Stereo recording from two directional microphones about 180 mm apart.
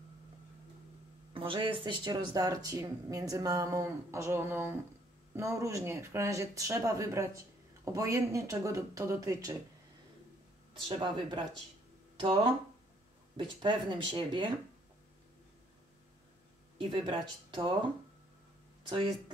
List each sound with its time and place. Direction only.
1.3 s speech: 30° right (ahead or behind)
10.9 s speech: 25° right (ahead or behind)
13.4 s speech: 25° right (ahead or behind)
16.7 s speech: 30° right (ahead or behind)
18.9 s speech: 25° right (ahead or behind)